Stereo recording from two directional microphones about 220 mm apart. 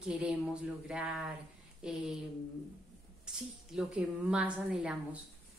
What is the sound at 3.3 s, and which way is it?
A woman's voice, 5° right (ahead or behind).